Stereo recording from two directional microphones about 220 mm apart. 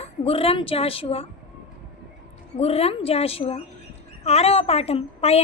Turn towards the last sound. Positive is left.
turn(degrees=30)  # may be behind; listen again after turning